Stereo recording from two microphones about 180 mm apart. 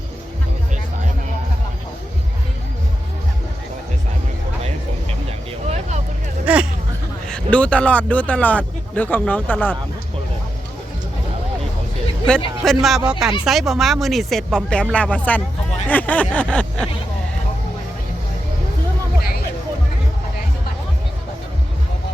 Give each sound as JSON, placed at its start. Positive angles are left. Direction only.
{"t": 5.6, "sound": "vehicle", "side_deg": -40}
{"t": 6.4, "sound": "hubbub", "side_deg": -5}
{"t": 7.3, "sound": "speech", "side_deg": 5}
{"t": 12.6, "sound": "speech", "side_deg": 0}